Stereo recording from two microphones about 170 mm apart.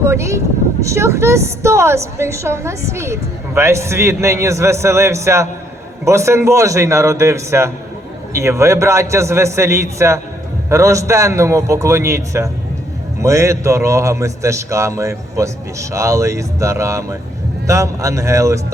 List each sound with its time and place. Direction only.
0.0 s speech: 15° right (ahead or behind)